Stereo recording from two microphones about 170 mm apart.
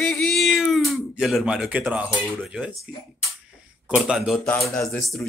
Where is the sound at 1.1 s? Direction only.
5° right (ahead or behind).